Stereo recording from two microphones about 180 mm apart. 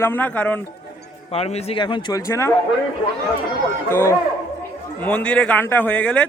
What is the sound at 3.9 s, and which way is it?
A man's voice, 15° left (ahead or behind).